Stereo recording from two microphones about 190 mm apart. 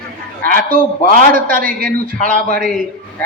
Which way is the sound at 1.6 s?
50° right (ahead or behind).